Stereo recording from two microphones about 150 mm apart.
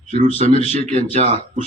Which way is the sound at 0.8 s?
50° right (ahead or behind).